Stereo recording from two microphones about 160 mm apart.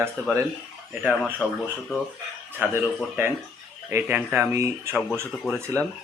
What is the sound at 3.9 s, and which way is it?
Speech, 10° right (ahead or behind).